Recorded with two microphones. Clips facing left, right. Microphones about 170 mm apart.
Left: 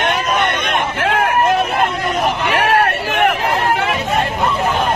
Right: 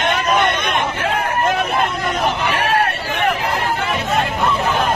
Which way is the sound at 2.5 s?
60° left (ahead or behind).